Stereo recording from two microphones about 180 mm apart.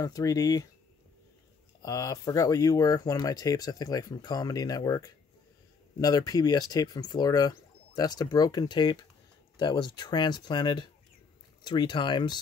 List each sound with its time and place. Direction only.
0.0 s speech: 20° left (ahead or behind)
1.8 s speech: 20° left (ahead or behind)